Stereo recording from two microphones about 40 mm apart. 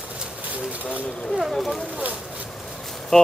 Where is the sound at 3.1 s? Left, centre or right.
Centre.